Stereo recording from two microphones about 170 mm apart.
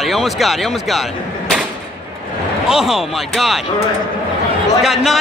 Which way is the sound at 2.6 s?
5° right (ahead or behind).